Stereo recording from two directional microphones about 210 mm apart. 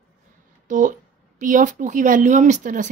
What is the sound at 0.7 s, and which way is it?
Speech, 40° right (ahead or behind).